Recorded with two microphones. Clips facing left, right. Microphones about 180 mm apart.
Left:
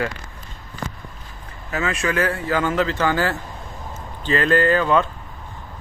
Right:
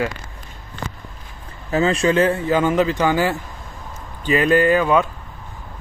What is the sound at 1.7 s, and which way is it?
Speech, 30° right (ahead or behind).